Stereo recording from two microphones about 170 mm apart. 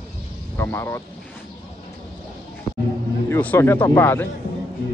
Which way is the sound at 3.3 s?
10° left (ahead or behind).